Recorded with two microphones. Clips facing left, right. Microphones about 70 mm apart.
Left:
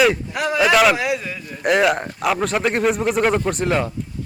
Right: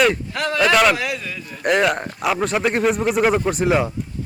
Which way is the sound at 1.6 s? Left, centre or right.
Centre.